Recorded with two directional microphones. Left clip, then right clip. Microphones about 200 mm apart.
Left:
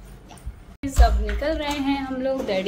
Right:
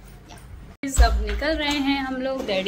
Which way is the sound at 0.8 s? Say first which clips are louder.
Left 1 dB; 5° left (ahead or behind).